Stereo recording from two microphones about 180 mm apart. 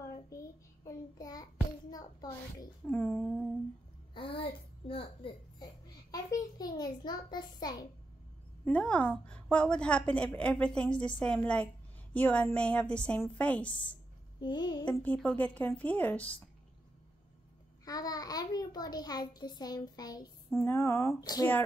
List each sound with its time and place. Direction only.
0.3 s child singing: 15° left (ahead or behind)
2.9 s a sound: 10° left (ahead or behind)
4.1 s a sound: 30° left (ahead or behind)
8.6 s a woman's voice: 10° left (ahead or behind)
14.4 s a child's voice: 25° left (ahead or behind)
14.9 s a woman's voice: 10° left (ahead or behind)
17.8 s a child's voice: 20° left (ahead or behind)